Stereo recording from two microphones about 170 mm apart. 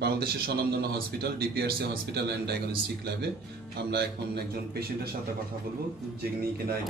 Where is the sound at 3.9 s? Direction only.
65° right (ahead or behind).